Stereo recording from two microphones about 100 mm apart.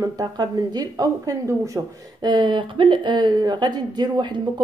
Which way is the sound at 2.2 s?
50° right (ahead or behind).